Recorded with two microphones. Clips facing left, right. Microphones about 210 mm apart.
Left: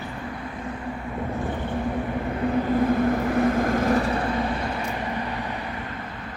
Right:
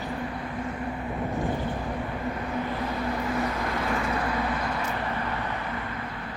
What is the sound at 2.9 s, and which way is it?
Vehicle, 50° left (ahead or behind).